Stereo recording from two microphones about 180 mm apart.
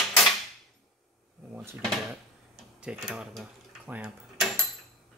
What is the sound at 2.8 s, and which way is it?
Speech, 5° right (ahead or behind).